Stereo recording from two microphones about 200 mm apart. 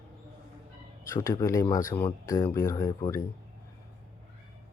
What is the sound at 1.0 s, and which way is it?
Speech, 15° left (ahead or behind).